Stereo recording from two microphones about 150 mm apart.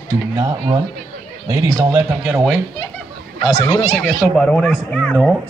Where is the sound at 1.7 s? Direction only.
15° right (ahead or behind).